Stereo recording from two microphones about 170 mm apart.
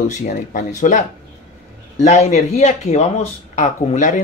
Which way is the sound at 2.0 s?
40° left (ahead or behind).